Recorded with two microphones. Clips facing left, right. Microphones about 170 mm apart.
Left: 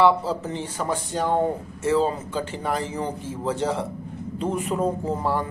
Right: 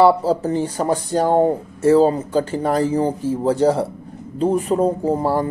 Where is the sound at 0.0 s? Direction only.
40° right (ahead or behind).